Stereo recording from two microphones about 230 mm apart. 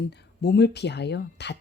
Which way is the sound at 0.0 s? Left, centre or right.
Left.